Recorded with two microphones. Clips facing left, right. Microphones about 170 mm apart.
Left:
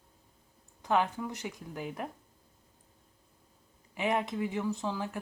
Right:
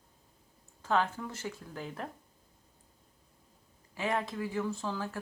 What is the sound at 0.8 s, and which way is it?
A woman's voice, 15° left (ahead or behind).